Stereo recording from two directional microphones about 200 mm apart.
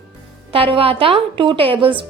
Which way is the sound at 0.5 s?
25° right (ahead or behind).